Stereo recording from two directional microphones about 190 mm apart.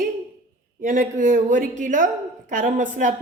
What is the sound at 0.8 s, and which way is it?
A woman's voice, 45° right (ahead or behind).